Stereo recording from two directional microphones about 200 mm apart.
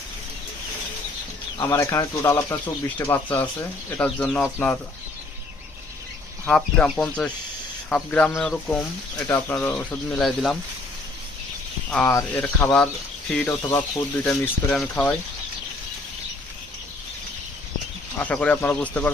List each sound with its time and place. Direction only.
1.5 s speech: 15° left (ahead or behind)
6.5 s speech: 5° left (ahead or behind)
11.9 s speech: 10° left (ahead or behind)
13.6 s speech: 20° left (ahead or behind)
14.3 s speech: 5° left (ahead or behind)
18.2 s speech: 5° left (ahead or behind)